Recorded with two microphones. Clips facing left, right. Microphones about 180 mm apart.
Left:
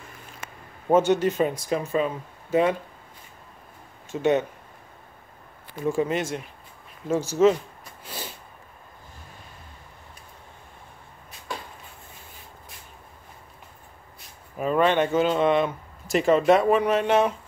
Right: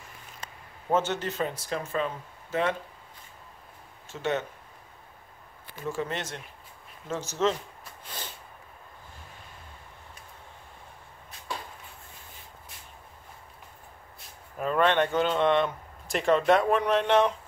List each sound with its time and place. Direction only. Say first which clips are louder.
0.9 s speech: left 8 dB; 15° left (ahead or behind)
4.1 s speech: left 8 dB; 15° left (ahead or behind)
5.9 s speech: left 8 dB; 10° left (ahead or behind)
14.6 s speech: left 3 dB; 5° left (ahead or behind)